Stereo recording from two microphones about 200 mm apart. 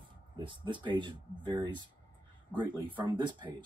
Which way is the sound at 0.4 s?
25° right (ahead or behind).